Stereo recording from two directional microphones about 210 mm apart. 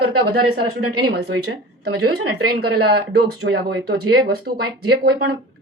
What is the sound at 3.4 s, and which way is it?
Speech, 60° right (ahead or behind).